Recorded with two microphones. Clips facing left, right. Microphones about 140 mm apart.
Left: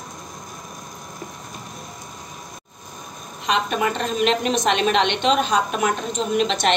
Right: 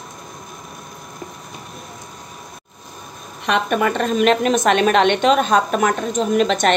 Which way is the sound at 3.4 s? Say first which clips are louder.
Right 3 dB; 55° right (ahead or behind).